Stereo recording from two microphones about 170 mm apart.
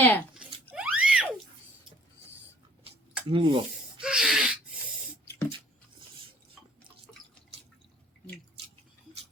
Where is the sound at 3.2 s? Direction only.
30° right (ahead or behind).